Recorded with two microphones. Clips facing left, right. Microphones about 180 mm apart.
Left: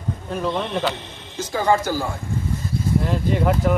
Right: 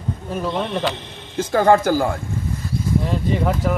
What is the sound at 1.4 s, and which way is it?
Speech, 55° right (ahead or behind).